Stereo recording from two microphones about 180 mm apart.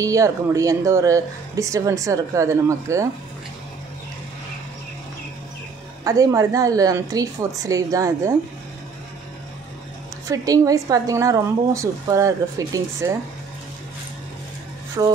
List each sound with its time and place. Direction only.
0.0 s speech: 20° right (ahead or behind)
6.0 s a woman's voice: 20° right (ahead or behind)
10.2 s speech: 20° right (ahead or behind)
15.0 s a woman's voice: 20° right (ahead or behind)